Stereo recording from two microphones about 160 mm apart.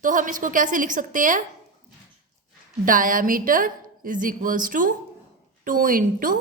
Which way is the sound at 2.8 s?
60° right (ahead or behind).